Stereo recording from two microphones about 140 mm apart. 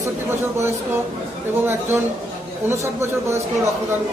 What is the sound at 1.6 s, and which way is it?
A man's voice, 15° right (ahead or behind).